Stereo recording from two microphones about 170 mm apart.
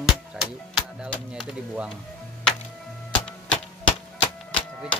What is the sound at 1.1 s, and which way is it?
Speech, 5° right (ahead or behind).